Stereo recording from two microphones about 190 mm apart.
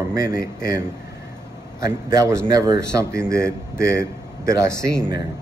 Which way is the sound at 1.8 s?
15° right (ahead or behind).